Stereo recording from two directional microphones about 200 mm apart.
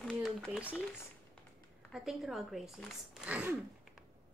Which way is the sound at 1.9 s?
Centre (ahead or behind).